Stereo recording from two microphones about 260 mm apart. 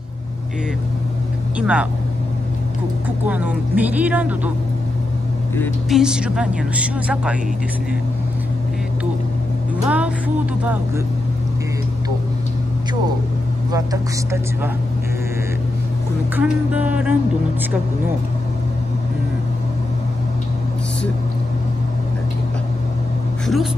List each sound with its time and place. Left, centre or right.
1.6 s speech: centre
3.3 s speech: centre
5.6 s speech: centre
9.8 s speech: centre
16.3 s speech: centre
23.4 s a sound: centre